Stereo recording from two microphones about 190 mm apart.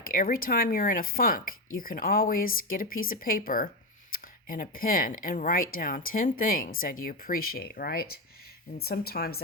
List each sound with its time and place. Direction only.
0.0 s speech: 45° left (ahead or behind)